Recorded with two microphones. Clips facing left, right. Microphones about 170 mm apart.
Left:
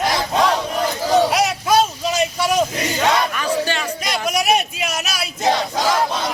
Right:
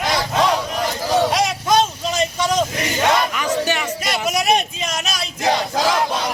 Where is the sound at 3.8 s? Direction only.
5° right (ahead or behind).